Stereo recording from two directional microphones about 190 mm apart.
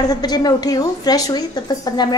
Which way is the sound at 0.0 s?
20° left (ahead or behind).